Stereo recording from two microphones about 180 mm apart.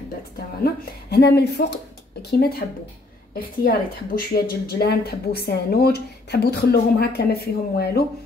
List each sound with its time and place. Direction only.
1.1 s speech: 65° left (ahead or behind)
2.3 s a woman's voice: 60° left (ahead or behind)